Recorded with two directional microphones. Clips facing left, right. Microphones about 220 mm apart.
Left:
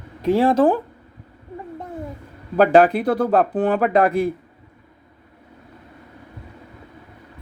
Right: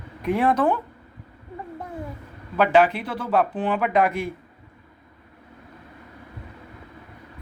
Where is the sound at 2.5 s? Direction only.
40° left (ahead or behind).